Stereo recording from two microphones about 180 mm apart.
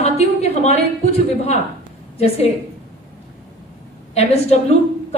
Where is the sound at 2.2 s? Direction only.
35° left (ahead or behind).